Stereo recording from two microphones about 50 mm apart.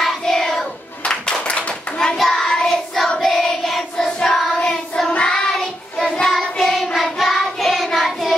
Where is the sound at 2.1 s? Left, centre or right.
Centre.